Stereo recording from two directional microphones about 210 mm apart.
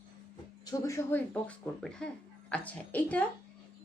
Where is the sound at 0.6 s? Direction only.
15° left (ahead or behind).